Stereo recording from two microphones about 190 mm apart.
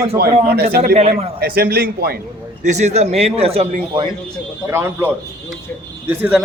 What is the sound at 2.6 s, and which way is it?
Speech, 35° right (ahead or behind).